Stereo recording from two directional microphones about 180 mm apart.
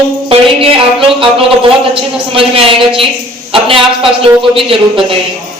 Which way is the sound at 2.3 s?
30° right (ahead or behind).